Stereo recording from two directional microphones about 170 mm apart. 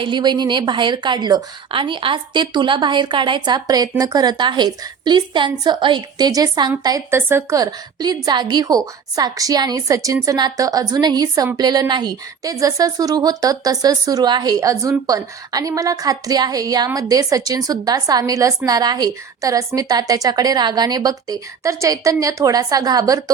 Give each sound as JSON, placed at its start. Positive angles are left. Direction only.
{"t": 0.0, "sound": "a woman's voice", "side_deg": -25}